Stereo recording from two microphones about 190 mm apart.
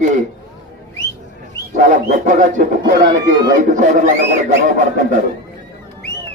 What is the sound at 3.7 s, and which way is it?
A man's voice, 40° right (ahead or behind).